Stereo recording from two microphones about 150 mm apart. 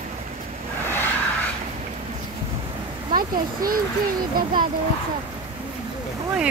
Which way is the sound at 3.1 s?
70° right (ahead or behind).